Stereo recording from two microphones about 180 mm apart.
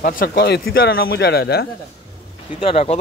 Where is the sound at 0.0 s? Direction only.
50° left (ahead or behind).